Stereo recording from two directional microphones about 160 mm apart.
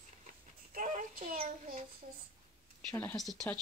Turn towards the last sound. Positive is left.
turn(degrees=5)  # may be behind; listen again after turning